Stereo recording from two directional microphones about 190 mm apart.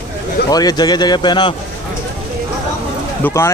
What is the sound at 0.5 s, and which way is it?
Speech, 20° left (ahead or behind).